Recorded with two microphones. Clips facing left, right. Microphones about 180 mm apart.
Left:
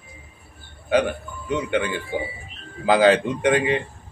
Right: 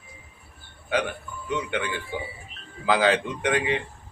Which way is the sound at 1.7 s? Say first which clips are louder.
Left 6 dB; 45° left (ahead or behind).